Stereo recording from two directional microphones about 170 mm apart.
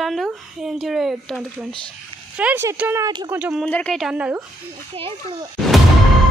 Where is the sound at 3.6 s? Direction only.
5° left (ahead or behind).